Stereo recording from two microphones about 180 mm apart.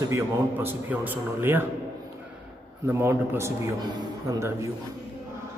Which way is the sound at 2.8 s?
15° right (ahead or behind).